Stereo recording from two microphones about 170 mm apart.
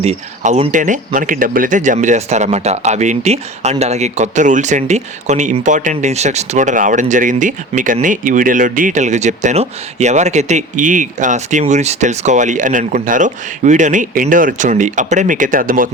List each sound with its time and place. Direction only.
0.0 s speech: 40° right (ahead or behind)